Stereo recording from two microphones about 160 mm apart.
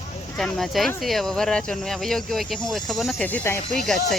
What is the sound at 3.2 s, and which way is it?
Speech, 15° left (ahead or behind).